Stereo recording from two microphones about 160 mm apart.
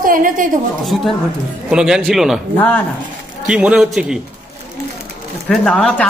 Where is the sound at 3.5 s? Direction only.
10° right (ahead or behind).